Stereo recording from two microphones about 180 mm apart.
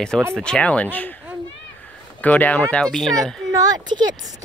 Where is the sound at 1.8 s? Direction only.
10° left (ahead or behind).